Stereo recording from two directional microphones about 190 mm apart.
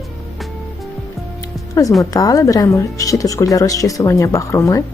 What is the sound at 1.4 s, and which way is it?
Music, 15° left (ahead or behind).